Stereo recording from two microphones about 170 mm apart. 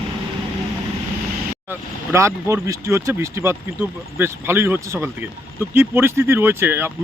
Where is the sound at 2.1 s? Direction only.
15° right (ahead or behind).